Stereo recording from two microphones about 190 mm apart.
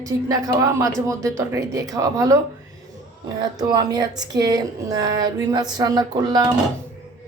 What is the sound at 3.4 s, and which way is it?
Speech, 20° right (ahead or behind).